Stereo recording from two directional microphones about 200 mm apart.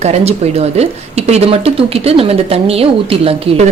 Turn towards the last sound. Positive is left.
turn(degrees=-30)  # may be behind; listen again after turning